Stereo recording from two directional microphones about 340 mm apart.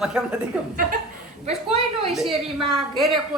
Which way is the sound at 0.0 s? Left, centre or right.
Centre.